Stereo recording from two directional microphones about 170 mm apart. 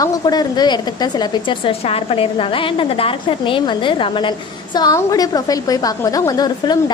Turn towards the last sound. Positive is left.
turn(degrees=25)  # may be behind; listen again after turning